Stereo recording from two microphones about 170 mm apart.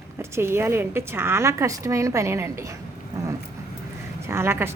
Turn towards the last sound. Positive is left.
turn(degrees=-15)  # may be behind; listen again after turning